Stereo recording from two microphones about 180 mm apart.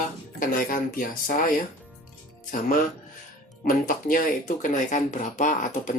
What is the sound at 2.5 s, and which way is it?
Speech, 45° left (ahead or behind).